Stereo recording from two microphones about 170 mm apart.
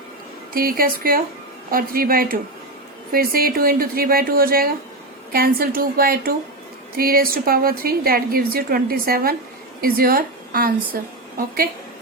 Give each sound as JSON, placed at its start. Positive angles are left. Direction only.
{"t": 0.5, "sound": "a woman's voice", "side_deg": -60}